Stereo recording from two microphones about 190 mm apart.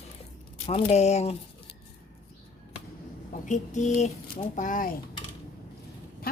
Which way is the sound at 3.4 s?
40° left (ahead or behind).